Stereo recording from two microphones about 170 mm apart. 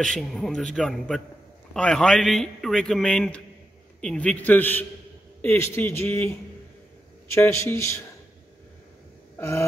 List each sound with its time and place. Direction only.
0.0 s a man's voice: centre (ahead or behind)
9.4 s a man's voice: 15° left (ahead or behind)